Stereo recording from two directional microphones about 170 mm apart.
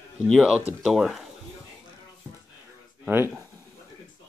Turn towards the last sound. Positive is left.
turn(degrees=-15)  # may be behind; listen again after turning